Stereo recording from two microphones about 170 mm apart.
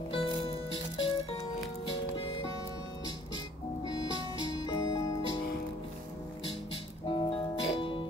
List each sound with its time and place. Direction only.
0.1 s music: 30° left (ahead or behind)
4.4 s music: 25° left (ahead or behind)
7.1 s music: 30° left (ahead or behind)